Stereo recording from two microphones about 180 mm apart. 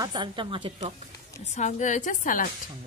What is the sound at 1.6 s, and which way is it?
Speech, 40° left (ahead or behind).